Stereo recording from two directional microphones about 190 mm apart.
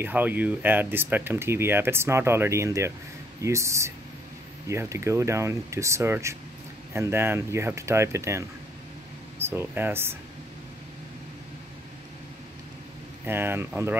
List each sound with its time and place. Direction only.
0.0 s speech: 10° right (ahead or behind)
13.2 s speech: 10° right (ahead or behind)